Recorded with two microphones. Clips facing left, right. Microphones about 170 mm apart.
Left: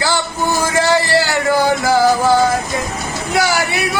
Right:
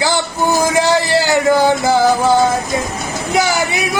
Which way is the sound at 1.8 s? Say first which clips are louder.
Even; 20° right (ahead or behind).